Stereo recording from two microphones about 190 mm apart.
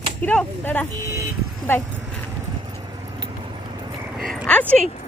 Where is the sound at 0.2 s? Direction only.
10° left (ahead or behind).